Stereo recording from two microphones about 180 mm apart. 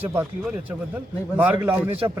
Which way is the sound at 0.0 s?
10° right (ahead or behind).